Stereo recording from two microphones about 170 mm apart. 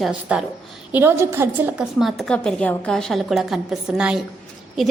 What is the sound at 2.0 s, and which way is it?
A woman's voice, centre (ahead or behind).